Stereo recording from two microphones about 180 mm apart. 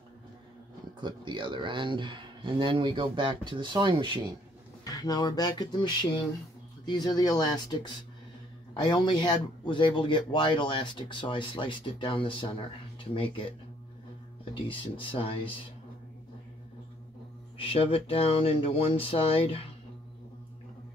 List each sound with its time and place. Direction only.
1.0 s speech: 25° right (ahead or behind)
4.8 s speech: 20° left (ahead or behind)
6.9 s speech: 20° left (ahead or behind)
14.5 s speech: 30° left (ahead or behind)
17.6 s speech: 30° left (ahead or behind)